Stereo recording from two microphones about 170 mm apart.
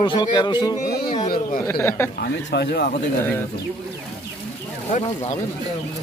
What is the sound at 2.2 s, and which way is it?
Speech, 80° left.